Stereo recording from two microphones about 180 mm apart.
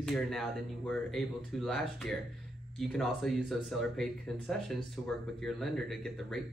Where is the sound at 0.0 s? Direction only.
Centre (ahead or behind).